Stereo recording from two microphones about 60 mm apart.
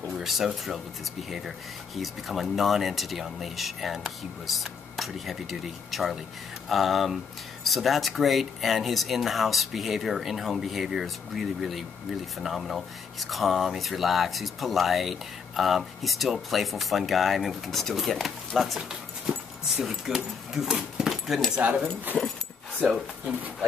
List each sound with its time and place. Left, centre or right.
0.2 s speech: centre
2.0 s speech: centre
21.5 s speech: right